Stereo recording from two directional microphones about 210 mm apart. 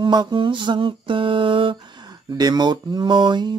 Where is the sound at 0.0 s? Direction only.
20° right (ahead or behind).